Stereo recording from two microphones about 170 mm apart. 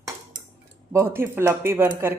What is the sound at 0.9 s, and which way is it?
Speech, 15° right (ahead or behind).